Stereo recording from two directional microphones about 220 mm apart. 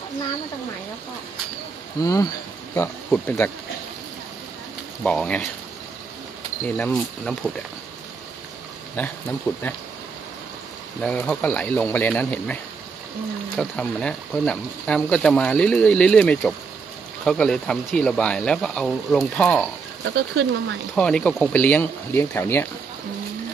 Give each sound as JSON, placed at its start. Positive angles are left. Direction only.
{"t": 2.0, "sound": "speech", "side_deg": 15}
{"t": 5.0, "sound": "speech", "side_deg": 5}
{"t": 6.6, "sound": "speech", "side_deg": 5}
{"t": 11.0, "sound": "speech", "side_deg": 5}
{"t": 13.6, "sound": "speech", "side_deg": 5}
{"t": 20.0, "sound": "speech", "side_deg": -50}
{"t": 20.9, "sound": "speech", "side_deg": 5}